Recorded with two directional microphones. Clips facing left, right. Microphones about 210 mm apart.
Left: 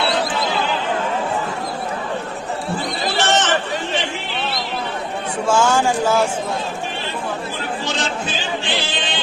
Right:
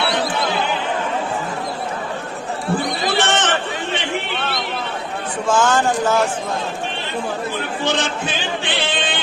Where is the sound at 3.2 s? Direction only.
55° right (ahead or behind).